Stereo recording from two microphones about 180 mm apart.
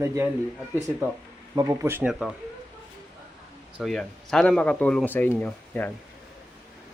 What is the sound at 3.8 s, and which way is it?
Speech, centre (ahead or behind).